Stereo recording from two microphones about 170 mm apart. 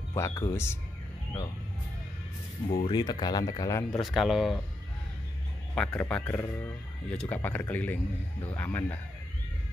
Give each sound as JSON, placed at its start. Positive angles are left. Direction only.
{"t": 0.1, "sound": "speech", "side_deg": 15}
{"t": 2.9, "sound": "speech", "side_deg": 25}
{"t": 3.9, "sound": "speech", "side_deg": 0}
{"t": 5.8, "sound": "speech", "side_deg": 5}
{"t": 6.2, "sound": "speech", "side_deg": 15}